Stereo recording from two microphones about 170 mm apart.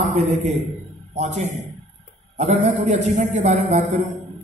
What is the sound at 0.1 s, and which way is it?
A man's voice, 45° right (ahead or behind).